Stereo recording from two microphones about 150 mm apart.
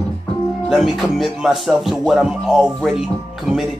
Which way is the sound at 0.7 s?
Centre (ahead or behind).